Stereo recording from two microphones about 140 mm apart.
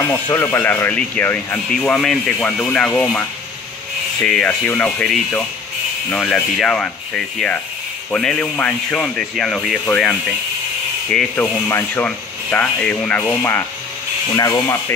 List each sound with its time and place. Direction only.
0.0 s speech: 20° left (ahead or behind); by 9.8 s centre (ahead or behind)
11.3 s speech: 15° left (ahead or behind)
14.3 s speech: 25° left (ahead or behind)